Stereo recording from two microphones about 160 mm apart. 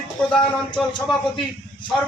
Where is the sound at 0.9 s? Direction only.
30° left (ahead or behind).